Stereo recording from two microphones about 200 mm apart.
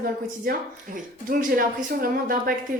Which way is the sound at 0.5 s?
45° right (ahead or behind).